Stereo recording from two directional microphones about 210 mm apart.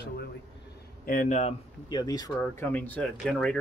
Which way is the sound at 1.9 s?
20° left (ahead or behind).